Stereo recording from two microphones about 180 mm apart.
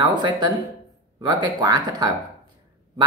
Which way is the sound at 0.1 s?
25° right (ahead or behind).